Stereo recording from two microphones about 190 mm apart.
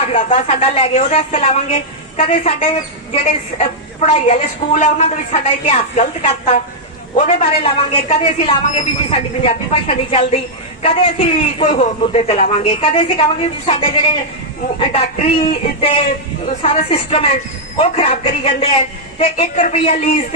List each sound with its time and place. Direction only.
0.3 s a woman's voice: 35° left (ahead or behind)